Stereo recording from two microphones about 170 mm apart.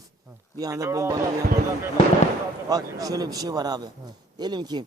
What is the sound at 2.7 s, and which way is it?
A man's voice, 20° right (ahead or behind).